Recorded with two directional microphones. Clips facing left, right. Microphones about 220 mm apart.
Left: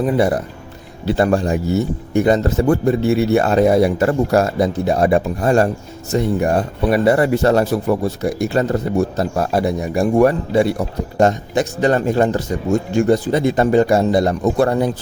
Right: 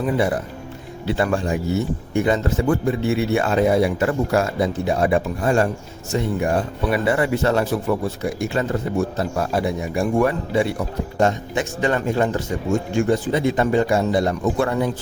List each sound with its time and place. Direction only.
0.0 s speech: 40° left (ahead or behind)